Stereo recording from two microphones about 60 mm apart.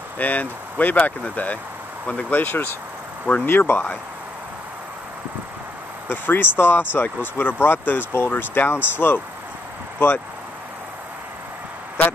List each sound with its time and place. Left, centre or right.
0.2 s speech: left
6.0 s speech: left